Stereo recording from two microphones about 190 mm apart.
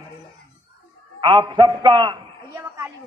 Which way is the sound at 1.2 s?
25° right (ahead or behind).